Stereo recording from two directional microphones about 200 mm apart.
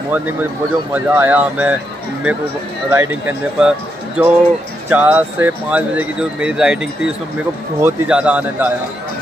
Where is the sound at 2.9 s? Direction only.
10° right (ahead or behind).